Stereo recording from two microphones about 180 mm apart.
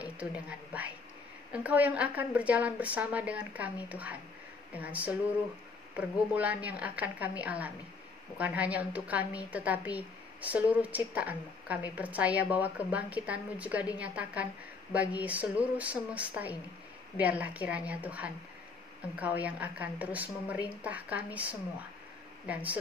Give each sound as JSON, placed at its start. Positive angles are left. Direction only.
{"t": 1.5, "sound": "a woman's voice", "side_deg": -10}